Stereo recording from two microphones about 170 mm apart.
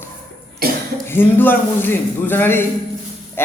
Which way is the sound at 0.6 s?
60° right (ahead or behind).